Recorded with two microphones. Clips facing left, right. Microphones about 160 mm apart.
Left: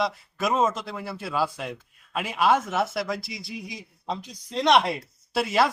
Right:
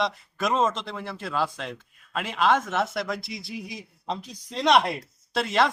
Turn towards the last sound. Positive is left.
turn(degrees=5)  # may be behind; listen again after turning